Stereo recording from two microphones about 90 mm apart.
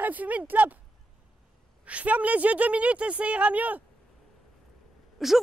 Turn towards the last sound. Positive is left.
turn(degrees=0)  # may be behind; listen again after turning